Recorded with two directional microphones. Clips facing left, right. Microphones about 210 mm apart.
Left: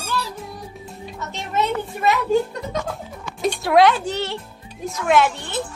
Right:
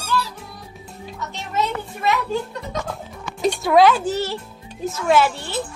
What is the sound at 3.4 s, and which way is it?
Speech, centre (ahead or behind).